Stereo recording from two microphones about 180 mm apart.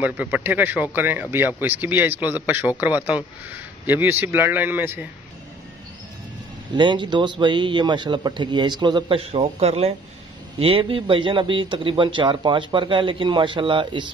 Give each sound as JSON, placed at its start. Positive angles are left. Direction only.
{"t": 0.0, "sound": "a man's voice", "side_deg": -10}
{"t": 6.7, "sound": "speech", "side_deg": -25}